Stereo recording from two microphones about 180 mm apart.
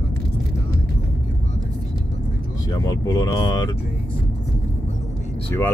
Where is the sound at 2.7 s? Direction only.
20° left (ahead or behind).